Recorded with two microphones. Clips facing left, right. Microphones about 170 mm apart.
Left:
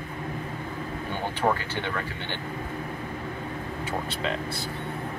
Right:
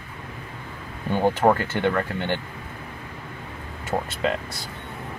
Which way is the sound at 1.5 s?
50° right (ahead or behind).